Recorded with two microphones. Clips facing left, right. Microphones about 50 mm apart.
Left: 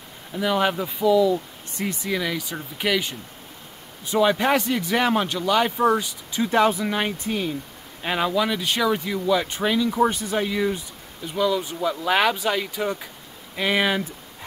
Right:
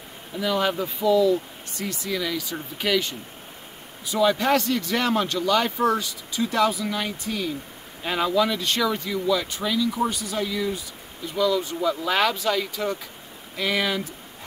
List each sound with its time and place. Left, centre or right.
0.4 s speech: centre
0.8 s speech: centre
1.3 s speech: left
8.0 s speech: centre
11.3 s speech: centre